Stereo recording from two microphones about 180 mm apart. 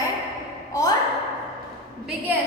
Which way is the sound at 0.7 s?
20° left (ahead or behind).